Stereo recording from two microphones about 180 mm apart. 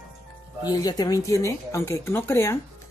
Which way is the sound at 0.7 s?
20° left (ahead or behind).